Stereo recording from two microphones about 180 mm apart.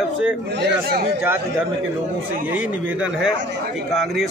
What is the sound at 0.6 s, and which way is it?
Speech, 60° right (ahead or behind).